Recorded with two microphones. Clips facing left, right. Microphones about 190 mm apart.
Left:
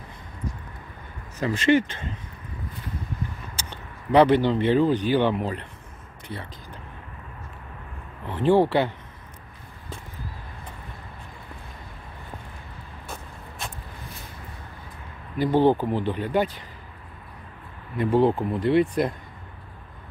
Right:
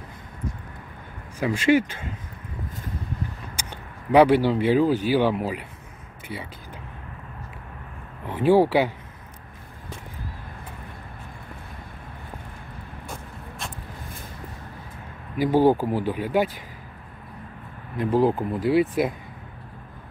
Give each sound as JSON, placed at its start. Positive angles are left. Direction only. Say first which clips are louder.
{"t": 1.4, "sound": "speech", "louder": "right 1 dB", "side_deg": -10}
{"t": 3.5, "sound": "speech", "louder": "right 1 dB", "side_deg": -10}
{"t": 6.2, "sound": "a sound", "louder": "right 1 dB", "side_deg": -5}
{"t": 8.3, "sound": "speech", "louder": "right 1 dB", "side_deg": -10}
{"t": 13.6, "sound": "vehicle", "louder": "even", "side_deg": 0}
{"t": 15.3, "sound": "speech", "louder": "right 1 dB", "side_deg": -10}
{"t": 17.9, "sound": "speech", "louder": "left 1 dB", "side_deg": 0}